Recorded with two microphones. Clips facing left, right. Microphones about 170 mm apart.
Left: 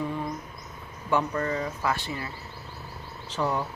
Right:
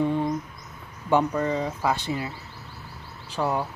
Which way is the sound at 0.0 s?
30° right (ahead or behind).